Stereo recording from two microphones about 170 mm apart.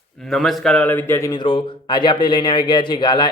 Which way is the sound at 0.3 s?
Centre (ahead or behind).